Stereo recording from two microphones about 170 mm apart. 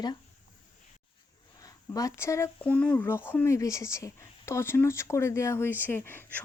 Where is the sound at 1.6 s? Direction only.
20° left (ahead or behind).